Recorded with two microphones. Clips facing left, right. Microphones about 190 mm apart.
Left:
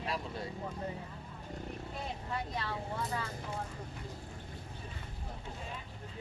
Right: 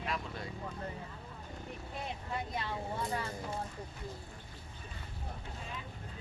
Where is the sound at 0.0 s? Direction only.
35° left (ahead or behind).